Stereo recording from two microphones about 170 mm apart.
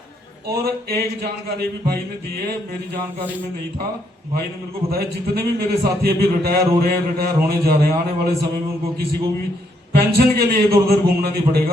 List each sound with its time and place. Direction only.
0.6 s a sound: 65° right (ahead or behind)
4.9 s a man's voice: 65° right (ahead or behind)
9.9 s a man's voice: 65° right (ahead or behind)